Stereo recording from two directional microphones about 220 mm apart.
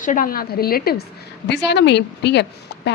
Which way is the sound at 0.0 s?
35° left (ahead or behind).